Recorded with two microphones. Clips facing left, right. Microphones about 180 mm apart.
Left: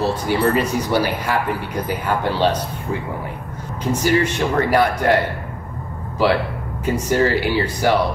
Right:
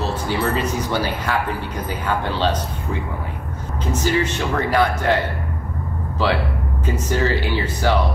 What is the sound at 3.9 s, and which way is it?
Speech, 10° left (ahead or behind).